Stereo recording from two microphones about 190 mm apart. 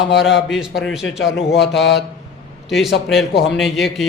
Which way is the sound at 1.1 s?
75° left (ahead or behind).